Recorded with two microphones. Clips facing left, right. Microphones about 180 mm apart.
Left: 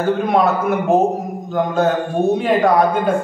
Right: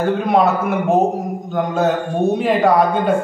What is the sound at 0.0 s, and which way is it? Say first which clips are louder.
A man's voice: even; centre (ahead or behind).